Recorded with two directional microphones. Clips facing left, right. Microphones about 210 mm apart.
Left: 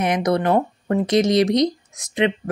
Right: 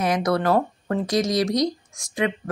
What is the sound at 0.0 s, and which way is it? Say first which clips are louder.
Speech: left 2 dB; 20° left (ahead or behind).